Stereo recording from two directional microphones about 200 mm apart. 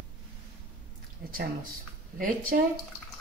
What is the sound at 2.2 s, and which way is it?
Speech, 45° right (ahead or behind).